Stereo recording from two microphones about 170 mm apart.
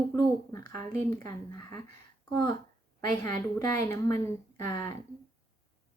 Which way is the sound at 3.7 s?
20° left (ahead or behind).